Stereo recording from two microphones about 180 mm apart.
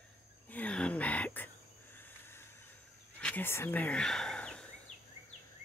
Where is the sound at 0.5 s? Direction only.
10° left (ahead or behind).